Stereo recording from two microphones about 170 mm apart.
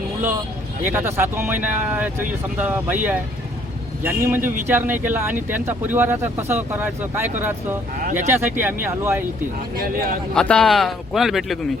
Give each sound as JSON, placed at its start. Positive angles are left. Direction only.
{"t": 0.9, "sound": "speech", "side_deg": -15}
{"t": 8.3, "sound": "speech", "side_deg": -10}
{"t": 9.7, "sound": "speech", "side_deg": -55}
{"t": 10.3, "sound": "speech", "side_deg": 5}